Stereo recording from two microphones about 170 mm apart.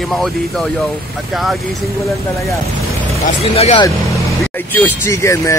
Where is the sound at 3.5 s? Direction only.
35° left (ahead or behind).